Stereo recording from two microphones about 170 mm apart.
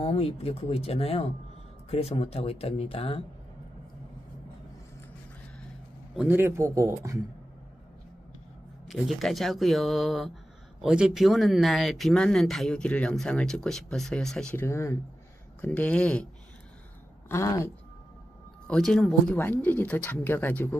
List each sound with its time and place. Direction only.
0.0 s speech: 35° left (ahead or behind)
6.1 s a man's voice: 10° right (ahead or behind)
8.8 s speech: centre (ahead or behind)
17.3 s speech: 15° left (ahead or behind)
18.7 s speech: 5° left (ahead or behind)